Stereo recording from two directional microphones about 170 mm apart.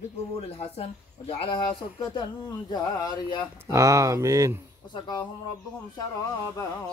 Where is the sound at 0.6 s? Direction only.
35° left (ahead or behind).